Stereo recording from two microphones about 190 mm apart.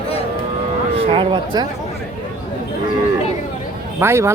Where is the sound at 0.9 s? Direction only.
30° right (ahead or behind).